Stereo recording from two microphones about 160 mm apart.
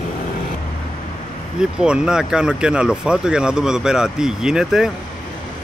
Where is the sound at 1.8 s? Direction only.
5° right (ahead or behind).